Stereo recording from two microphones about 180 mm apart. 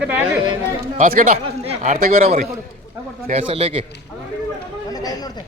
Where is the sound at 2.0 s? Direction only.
55° right (ahead or behind).